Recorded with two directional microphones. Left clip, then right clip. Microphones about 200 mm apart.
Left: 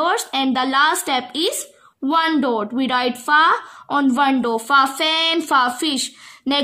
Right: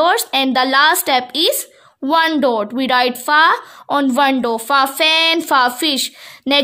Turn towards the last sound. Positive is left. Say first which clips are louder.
# right 5 dB
turn(degrees=-35)  # may be behind; listen again after turning